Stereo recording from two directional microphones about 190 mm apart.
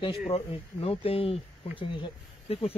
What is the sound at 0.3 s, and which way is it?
Speech, 30° left (ahead or behind).